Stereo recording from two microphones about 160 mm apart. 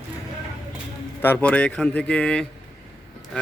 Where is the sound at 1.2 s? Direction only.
10° left (ahead or behind).